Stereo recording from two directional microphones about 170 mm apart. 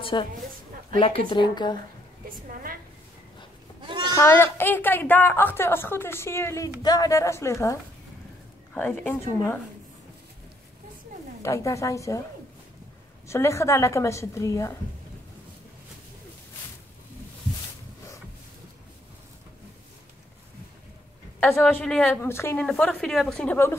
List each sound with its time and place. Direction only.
0.0 s a woman's voice: 30° left (ahead or behind)
2.2 s a sound: 55° right (ahead or behind)
3.8 s sheep: 25° right (ahead or behind)
4.1 s a woman's voice: 15° left (ahead or behind)
8.7 s a woman's voice: 10° left (ahead or behind)
11.4 s a woman's voice: 20° left (ahead or behind)
13.3 s a woman's voice: 15° left (ahead or behind)
21.4 s a woman's voice: 10° left (ahead or behind)